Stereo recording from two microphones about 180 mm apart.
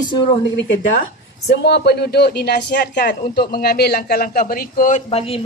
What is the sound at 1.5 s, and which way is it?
A man's voice, 70° left (ahead or behind).